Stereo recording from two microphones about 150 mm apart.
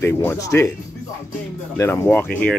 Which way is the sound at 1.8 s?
15° left (ahead or behind).